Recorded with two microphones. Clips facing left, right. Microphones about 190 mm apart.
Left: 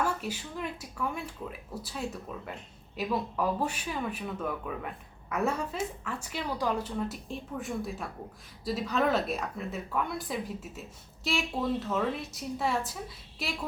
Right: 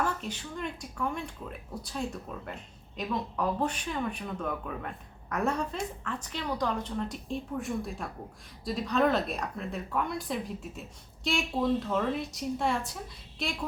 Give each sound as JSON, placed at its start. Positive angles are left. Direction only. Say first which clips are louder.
{"t": 0.0, "sound": "a woman's voice", "louder": "left 1 dB", "side_deg": 10}